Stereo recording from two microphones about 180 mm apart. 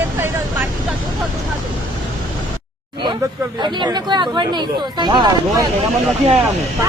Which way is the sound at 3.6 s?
25° right (ahead or behind).